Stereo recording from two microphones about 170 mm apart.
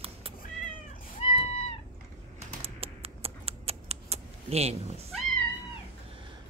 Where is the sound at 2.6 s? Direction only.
35° right (ahead or behind).